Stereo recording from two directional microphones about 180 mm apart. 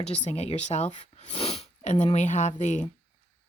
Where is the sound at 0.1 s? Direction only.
35° left (ahead or behind).